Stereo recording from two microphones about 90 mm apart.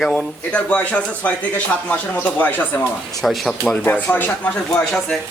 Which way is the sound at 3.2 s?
Centre (ahead or behind).